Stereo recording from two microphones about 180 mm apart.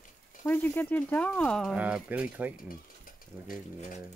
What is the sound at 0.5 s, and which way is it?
Speech, 10° left (ahead or behind).